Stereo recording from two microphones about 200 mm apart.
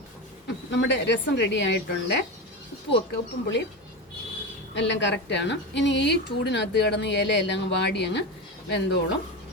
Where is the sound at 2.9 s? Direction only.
60° left (ahead or behind).